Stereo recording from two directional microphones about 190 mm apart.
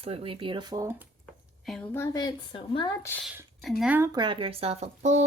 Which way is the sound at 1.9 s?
15° left (ahead or behind).